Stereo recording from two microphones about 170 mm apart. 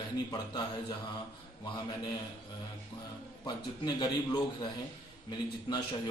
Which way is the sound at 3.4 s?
25° left (ahead or behind).